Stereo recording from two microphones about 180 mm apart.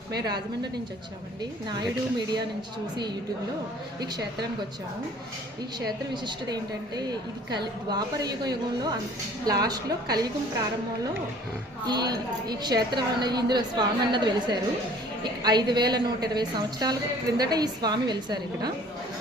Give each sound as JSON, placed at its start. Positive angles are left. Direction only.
{"t": 1.7, "sound": "a woman's voice", "side_deg": -25}
{"t": 4.0, "sound": "a woman's voice", "side_deg": -65}
{"t": 6.2, "sound": "a woman's voice", "side_deg": -25}
{"t": 11.9, "sound": "a woman's voice", "side_deg": -20}